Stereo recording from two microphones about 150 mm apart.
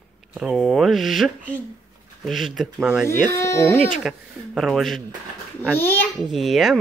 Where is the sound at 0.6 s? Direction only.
Centre (ahead or behind).